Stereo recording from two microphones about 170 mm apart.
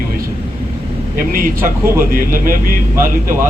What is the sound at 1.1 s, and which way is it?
Speech, 55° right (ahead or behind).